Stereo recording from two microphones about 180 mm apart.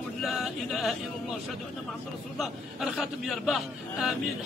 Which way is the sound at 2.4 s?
Centre (ahead or behind).